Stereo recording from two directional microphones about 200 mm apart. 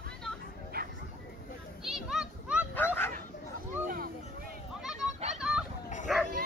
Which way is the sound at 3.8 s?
45° right (ahead or behind).